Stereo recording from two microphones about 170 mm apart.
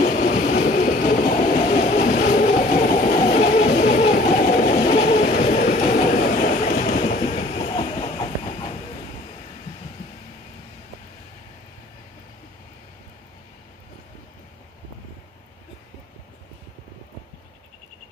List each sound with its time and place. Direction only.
0.0 s train: 45° left (ahead or behind); by 8.3 s 30° left (ahead or behind)